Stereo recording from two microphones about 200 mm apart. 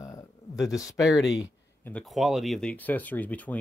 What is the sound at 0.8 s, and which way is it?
Speech, centre (ahead or behind).